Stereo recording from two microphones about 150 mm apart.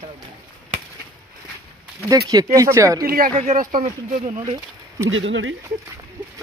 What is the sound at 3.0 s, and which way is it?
Speech, 75° right (ahead or behind).